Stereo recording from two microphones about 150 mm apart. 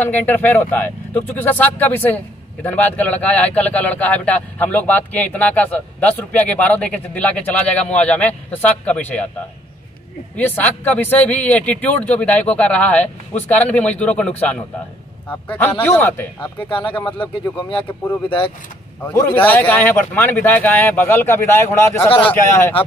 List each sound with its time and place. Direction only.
0.0 s speech: 10° left (ahead or behind)
10.3 s speech: 10° left (ahead or behind)
16.3 s speech: 35° left (ahead or behind)
19.0 s speech: 10° left (ahead or behind)